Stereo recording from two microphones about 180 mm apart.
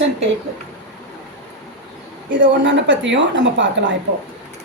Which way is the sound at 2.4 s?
90° right.